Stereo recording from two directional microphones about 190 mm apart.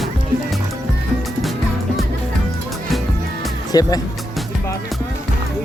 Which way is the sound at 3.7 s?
20° left (ahead or behind).